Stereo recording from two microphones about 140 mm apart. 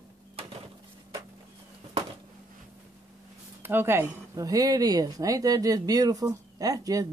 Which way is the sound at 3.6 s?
15° right (ahead or behind).